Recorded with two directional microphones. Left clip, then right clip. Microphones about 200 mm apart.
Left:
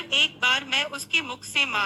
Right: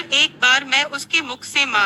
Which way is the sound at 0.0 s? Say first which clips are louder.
Right 6 dB; 20° right (ahead or behind).